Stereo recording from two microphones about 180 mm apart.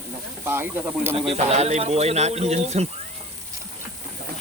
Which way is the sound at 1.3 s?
35° right (ahead or behind).